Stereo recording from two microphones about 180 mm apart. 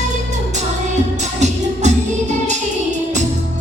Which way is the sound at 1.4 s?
40° right (ahead or behind).